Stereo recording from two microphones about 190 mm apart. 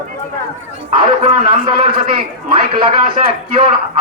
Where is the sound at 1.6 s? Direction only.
25° right (ahead or behind).